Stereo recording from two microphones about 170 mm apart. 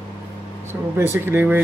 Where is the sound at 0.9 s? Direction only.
15° right (ahead or behind).